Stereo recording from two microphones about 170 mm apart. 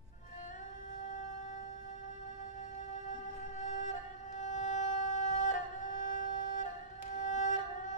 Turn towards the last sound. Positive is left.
turn(degrees=45)  # may be behind; listen again after turning